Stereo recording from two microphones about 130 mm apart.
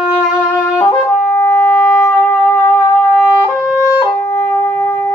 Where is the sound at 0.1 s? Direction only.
15° left (ahead or behind).